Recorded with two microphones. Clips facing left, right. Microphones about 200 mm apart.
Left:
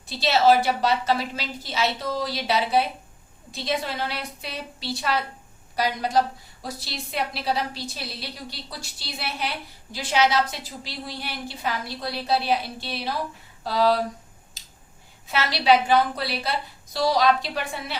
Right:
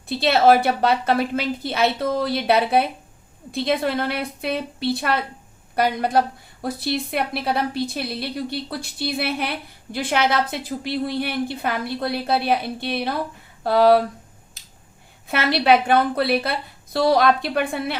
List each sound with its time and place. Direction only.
0.1 s a woman's voice: 55° right (ahead or behind)
14.6 s finger snapping: 55° right (ahead or behind)
15.3 s a woman's voice: 55° right (ahead or behind)